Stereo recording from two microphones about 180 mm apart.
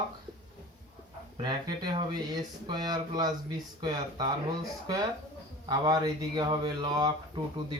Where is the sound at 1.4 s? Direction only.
25° right (ahead or behind).